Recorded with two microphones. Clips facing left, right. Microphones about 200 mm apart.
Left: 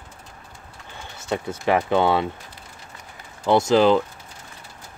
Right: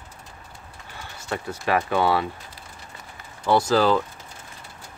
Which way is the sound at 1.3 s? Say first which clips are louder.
Left 3 dB; 20° left (ahead or behind).